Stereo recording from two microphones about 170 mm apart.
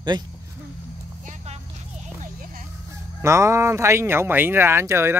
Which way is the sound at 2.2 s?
55° right (ahead or behind).